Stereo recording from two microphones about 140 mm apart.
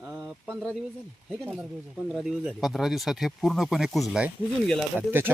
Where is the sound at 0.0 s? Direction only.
20° right (ahead or behind).